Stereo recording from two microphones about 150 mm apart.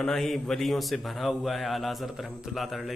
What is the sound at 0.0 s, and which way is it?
Speech, centre (ahead or behind).